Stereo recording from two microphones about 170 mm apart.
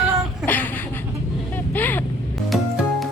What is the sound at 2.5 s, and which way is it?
Music, centre (ahead or behind).